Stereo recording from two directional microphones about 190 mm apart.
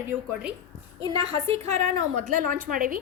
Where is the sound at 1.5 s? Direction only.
35° right (ahead or behind).